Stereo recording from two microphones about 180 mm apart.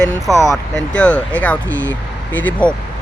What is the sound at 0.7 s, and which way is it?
Speech, 5° left (ahead or behind).